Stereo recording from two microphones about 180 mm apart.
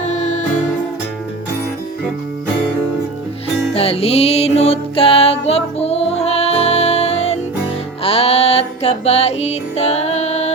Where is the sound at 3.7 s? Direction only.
35° left (ahead or behind).